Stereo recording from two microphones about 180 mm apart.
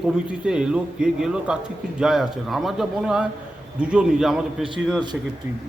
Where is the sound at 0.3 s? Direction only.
5° right (ahead or behind).